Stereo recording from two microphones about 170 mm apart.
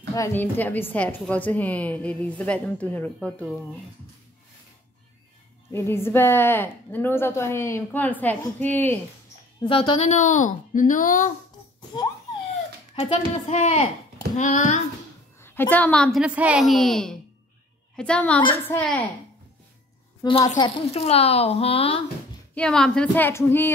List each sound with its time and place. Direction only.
0.1 s a woman's voice: 15° left (ahead or behind)
5.7 s a woman's voice: 15° left (ahead or behind)
9.6 s a woman's voice: 30° left (ahead or behind); by 11.3 s 50° left (ahead or behind)
11.9 s a sound: 25° left (ahead or behind)
13.5 s a woman's voice: 40° left (ahead or behind)
15.4 s a woman's voice: 10° left (ahead or behind)
20.2 s a sound: 20° left (ahead or behind)
20.5 s a woman's voice: 30° left (ahead or behind)
22.5 s a woman's voice: 5° left (ahead or behind)